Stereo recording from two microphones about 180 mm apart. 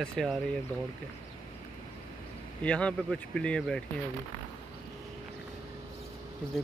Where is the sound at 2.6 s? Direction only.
5° left (ahead or behind).